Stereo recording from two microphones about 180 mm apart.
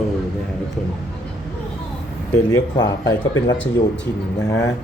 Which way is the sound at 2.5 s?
20° left (ahead or behind).